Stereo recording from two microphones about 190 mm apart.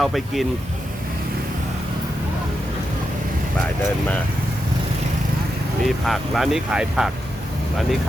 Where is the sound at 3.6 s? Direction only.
5° left (ahead or behind).